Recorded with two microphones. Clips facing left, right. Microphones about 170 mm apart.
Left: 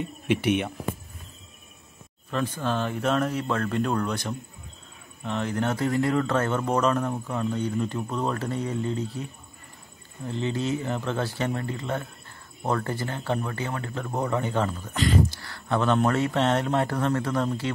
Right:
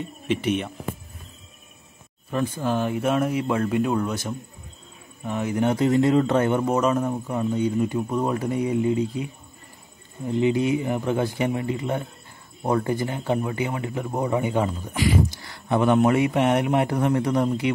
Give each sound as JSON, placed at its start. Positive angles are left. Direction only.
{"t": 0.3, "sound": "speech", "side_deg": 65}
{"t": 2.3, "sound": "a man's voice", "side_deg": -10}